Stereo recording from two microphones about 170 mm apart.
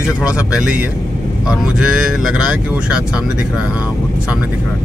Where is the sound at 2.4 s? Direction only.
5° right (ahead or behind).